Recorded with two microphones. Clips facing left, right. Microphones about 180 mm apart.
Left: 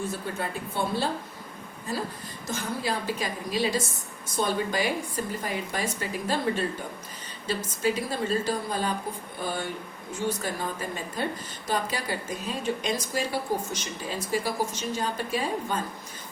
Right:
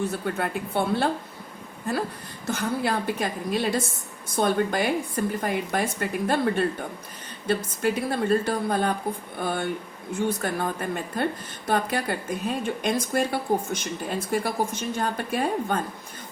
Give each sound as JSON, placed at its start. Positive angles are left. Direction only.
{"t": 0.1, "sound": "a woman's voice", "side_deg": -60}
{"t": 2.5, "sound": "a woman's voice", "side_deg": -60}